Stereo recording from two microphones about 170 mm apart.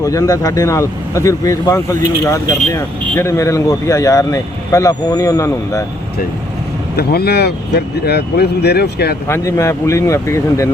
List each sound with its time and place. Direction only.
0.0 s speech: 20° left (ahead or behind)
6.9 s speech: 70° left (ahead or behind)
9.2 s speech: 15° left (ahead or behind)